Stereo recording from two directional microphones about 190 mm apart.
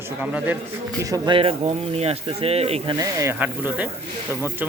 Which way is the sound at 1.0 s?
20° right (ahead or behind).